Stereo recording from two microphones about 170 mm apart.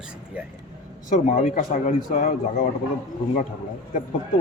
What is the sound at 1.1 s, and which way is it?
Speech, 50° left (ahead or behind).